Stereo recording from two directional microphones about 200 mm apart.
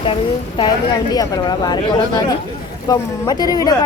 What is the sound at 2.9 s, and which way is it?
Speech, 20° left (ahead or behind).